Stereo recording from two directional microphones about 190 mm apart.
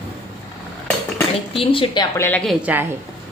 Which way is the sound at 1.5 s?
25° left (ahead or behind).